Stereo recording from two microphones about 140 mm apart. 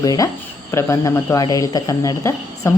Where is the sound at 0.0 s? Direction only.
25° left (ahead or behind).